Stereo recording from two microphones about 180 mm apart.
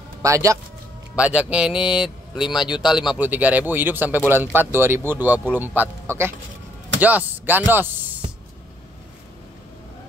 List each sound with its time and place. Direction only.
0.2 s a man's voice: 15° right (ahead or behind)
1.1 s a man's voice: 5° right (ahead or behind)